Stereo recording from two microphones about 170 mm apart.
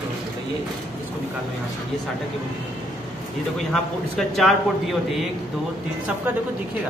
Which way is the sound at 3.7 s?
Centre (ahead or behind).